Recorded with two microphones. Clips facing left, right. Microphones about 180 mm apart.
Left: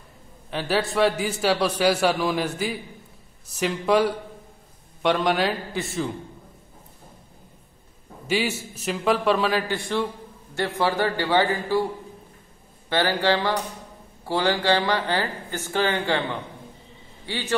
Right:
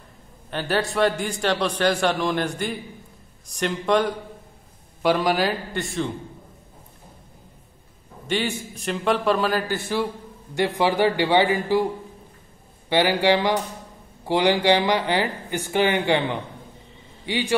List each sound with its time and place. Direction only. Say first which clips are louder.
0.5 s a man's voice: even; centre (ahead or behind)
8.3 s a man's voice: even; 5° left (ahead or behind)
10.5 s speech: right 3 dB; 15° right (ahead or behind)
12.9 s speech: right 3 dB; 15° right (ahead or behind)